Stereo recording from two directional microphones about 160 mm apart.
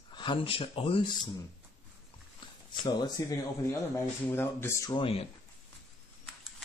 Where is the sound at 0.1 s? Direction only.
30° left (ahead or behind).